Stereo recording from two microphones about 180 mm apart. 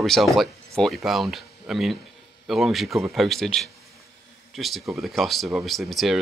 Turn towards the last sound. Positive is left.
turn(degrees=0)  # may be behind; listen again after turning